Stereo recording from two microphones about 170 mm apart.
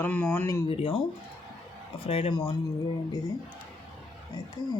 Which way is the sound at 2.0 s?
35° left (ahead or behind).